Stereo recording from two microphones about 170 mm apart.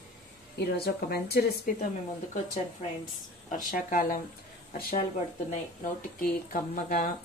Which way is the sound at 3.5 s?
50° left (ahead or behind).